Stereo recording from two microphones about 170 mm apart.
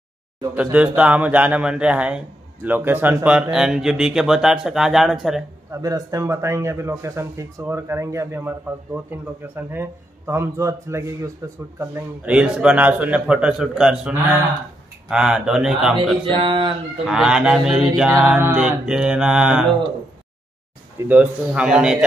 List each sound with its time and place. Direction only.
0.6 s a man's voice: 10° right (ahead or behind)
5.7 s a man's voice: 20° right (ahead or behind)
12.3 s speech: 5° right (ahead or behind)
16.3 s speech: 30° right (ahead or behind)
17.0 s speech: 5° right (ahead or behind)
21.0 s speech: 10° right (ahead or behind)